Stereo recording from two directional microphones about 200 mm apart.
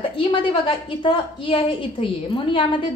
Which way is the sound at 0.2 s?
25° left (ahead or behind).